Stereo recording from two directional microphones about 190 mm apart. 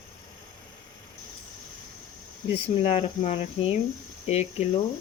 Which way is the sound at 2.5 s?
35° left (ahead or behind).